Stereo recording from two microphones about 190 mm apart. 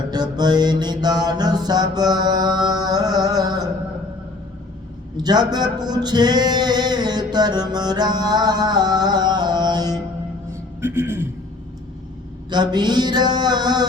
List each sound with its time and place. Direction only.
0.1 s mantra: 20° right (ahead or behind)
5.1 s speech: 20° right (ahead or behind)
5.8 s music: 20° right (ahead or behind)
10.8 s a sound: 10° right (ahead or behind)
12.5 s speech: 25° right (ahead or behind)